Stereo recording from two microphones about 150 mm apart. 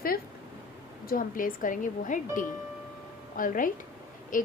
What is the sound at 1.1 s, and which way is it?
A woman's voice, 65° left (ahead or behind).